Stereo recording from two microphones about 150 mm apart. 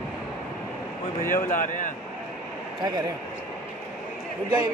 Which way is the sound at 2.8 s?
30° right (ahead or behind).